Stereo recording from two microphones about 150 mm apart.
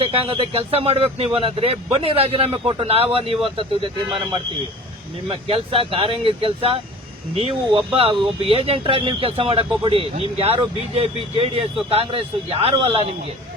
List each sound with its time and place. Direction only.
0.0 s speech: 40° right (ahead or behind)
5.3 s speech: 35° right (ahead or behind)